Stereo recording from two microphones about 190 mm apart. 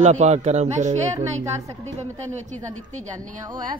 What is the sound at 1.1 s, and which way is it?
Speech, 15° right (ahead or behind).